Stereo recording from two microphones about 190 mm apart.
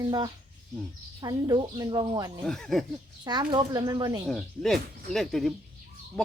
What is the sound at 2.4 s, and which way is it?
Speech, centre (ahead or behind).